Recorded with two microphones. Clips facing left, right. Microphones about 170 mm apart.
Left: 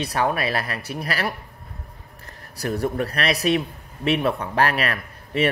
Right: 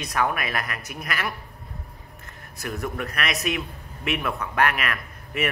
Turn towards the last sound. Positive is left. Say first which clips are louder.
# left 5 dB
turn(degrees=30)  # may be behind; listen again after turning